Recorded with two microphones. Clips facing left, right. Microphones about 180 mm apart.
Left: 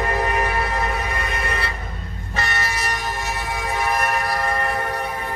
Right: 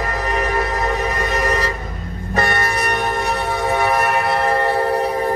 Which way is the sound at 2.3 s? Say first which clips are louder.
Right 7 dB; 50° right (ahead or behind).